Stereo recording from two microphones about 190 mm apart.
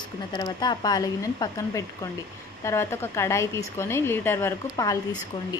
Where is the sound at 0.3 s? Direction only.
20° left (ahead or behind).